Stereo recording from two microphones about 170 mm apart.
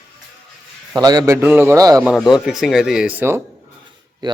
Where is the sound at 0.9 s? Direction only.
25° right (ahead or behind).